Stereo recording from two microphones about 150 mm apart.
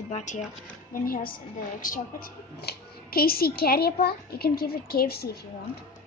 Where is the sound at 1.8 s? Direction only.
70° left (ahead or behind).